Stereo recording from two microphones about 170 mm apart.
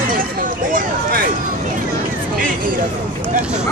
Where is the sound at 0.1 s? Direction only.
55° right (ahead or behind).